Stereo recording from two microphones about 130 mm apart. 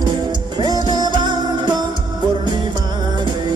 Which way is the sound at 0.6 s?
30° right (ahead or behind).